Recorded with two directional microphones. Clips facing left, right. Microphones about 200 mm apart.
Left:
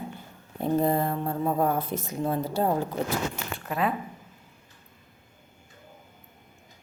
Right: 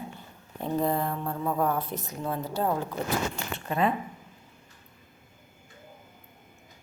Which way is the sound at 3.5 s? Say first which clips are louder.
Right 2 dB; centre (ahead or behind).